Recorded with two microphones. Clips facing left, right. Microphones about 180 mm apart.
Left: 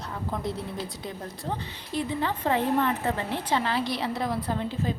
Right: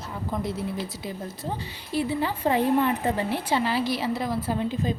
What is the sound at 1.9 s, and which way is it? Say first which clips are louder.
A woman's voice: right 2 dB; 10° right (ahead or behind).